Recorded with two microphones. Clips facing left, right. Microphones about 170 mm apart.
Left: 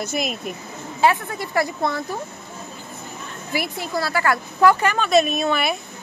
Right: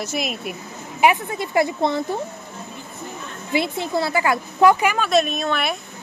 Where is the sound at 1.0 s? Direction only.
20° right (ahead or behind).